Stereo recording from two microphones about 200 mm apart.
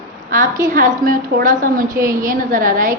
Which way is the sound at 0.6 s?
40° right (ahead or behind).